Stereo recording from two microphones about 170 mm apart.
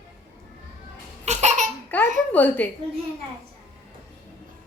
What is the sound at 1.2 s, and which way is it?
Laughter, 40° right (ahead or behind).